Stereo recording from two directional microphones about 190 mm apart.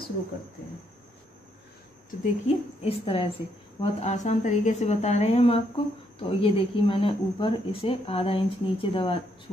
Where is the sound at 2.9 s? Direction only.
30° left (ahead or behind).